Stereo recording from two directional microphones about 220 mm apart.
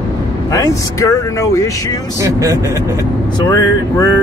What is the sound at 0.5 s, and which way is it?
Speech, 15° left (ahead or behind).